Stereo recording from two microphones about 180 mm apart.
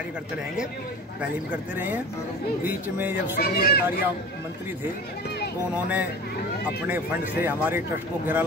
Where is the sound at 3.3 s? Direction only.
60° left (ahead or behind).